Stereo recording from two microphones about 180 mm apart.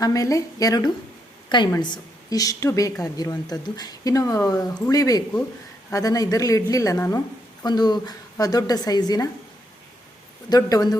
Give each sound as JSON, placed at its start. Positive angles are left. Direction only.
{"t": 0.0, "sound": "a woman's voice", "side_deg": 20}
{"t": 10.5, "sound": "a woman's voice", "side_deg": 20}